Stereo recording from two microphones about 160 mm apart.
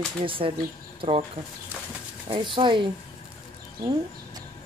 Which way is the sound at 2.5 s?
30° right (ahead or behind).